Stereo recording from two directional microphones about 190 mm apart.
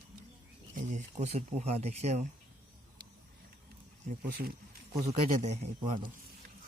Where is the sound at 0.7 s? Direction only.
40° right (ahead or behind).